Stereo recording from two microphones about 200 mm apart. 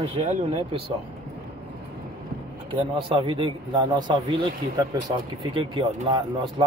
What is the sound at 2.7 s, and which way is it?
Speech, 25° right (ahead or behind).